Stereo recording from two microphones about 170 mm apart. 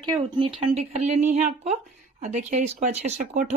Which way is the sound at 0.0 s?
30° right (ahead or behind).